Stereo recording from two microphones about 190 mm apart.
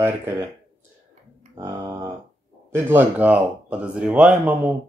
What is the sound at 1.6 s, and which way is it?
Speech, 15° right (ahead or behind).